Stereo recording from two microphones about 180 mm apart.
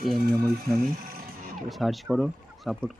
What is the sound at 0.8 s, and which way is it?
Music, 55° right (ahead or behind).